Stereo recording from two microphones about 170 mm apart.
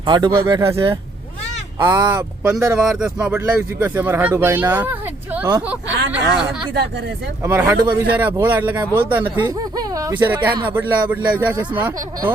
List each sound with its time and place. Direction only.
0.0 s speech: 25° right (ahead or behind)
1.8 s speech: 25° right (ahead or behind); by 6.7 s 5° right (ahead or behind)
7.4 s speech: 15° right (ahead or behind)
8.9 s speech: 15° left (ahead or behind)
9.1 s speech: 10° right (ahead or behind)